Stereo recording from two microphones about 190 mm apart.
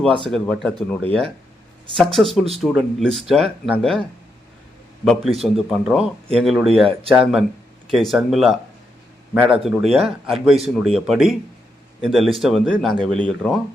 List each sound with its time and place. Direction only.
0.3 s speech: centre (ahead or behind)
5.0 s speech: centre (ahead or behind)